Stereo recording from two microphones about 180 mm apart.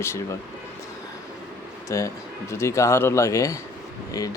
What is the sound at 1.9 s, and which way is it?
Speech, 15° left (ahead or behind).